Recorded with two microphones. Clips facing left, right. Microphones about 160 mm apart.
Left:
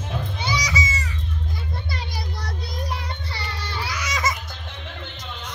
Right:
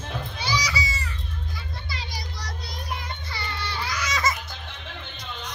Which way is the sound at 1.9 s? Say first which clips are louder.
Left 4 dB; 55° left (ahead or behind).